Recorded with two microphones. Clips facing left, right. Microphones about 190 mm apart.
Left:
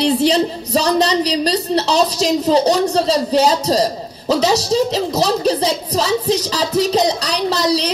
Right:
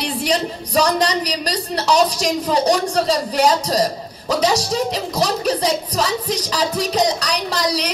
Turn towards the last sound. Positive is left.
turn(degrees=25)  # may be behind; listen again after turning